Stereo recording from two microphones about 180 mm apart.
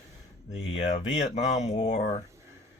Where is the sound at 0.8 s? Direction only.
40° left (ahead or behind).